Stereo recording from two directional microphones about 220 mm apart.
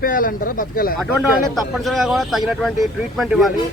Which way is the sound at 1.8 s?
Centre (ahead or behind).